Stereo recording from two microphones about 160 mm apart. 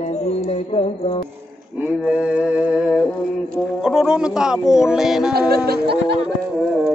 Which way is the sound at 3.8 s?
5° right (ahead or behind).